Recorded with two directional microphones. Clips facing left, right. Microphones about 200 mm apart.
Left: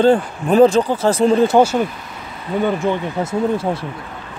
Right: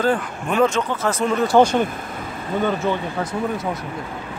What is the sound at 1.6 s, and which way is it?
Speech, 5° left (ahead or behind).